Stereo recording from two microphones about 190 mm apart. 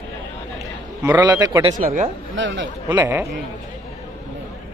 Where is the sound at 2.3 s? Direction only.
80° right.